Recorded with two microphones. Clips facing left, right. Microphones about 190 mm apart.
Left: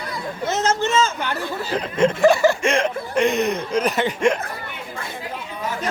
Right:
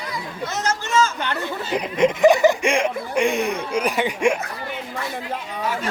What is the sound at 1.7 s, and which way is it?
Chuckle, 15° right (ahead or behind).